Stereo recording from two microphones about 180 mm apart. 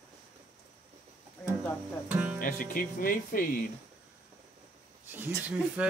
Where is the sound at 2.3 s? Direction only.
50° left (ahead or behind).